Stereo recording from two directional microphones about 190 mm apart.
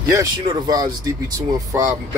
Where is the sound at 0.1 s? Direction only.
20° right (ahead or behind).